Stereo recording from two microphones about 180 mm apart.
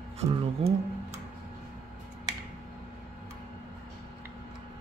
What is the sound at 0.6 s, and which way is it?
Speech, 35° right (ahead or behind).